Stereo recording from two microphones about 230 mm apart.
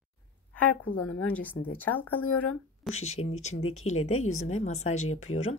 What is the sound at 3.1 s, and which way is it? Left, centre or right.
Speech, left.